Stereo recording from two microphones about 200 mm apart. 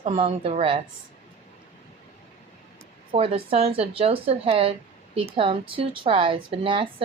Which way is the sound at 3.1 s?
30° right (ahead or behind).